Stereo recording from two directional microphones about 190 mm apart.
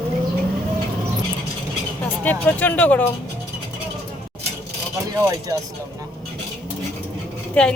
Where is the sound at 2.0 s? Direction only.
10° left (ahead or behind).